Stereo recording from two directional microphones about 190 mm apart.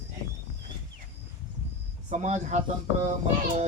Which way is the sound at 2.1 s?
40° right (ahead or behind).